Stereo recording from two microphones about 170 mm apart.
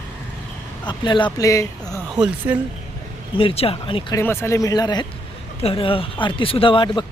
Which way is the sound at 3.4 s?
35° left (ahead or behind).